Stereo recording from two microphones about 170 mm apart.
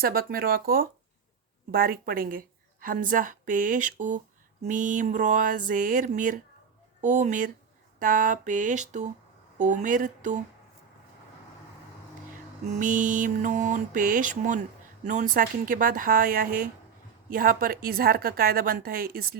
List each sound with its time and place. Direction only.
0.0 s a woman's voice: 60° right (ahead or behind)
12.6 s a woman's voice: 45° right (ahead or behind)